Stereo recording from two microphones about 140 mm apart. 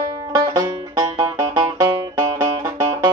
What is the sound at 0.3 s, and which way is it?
Music, 25° right (ahead or behind).